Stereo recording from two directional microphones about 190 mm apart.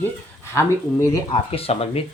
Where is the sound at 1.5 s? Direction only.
30° left (ahead or behind).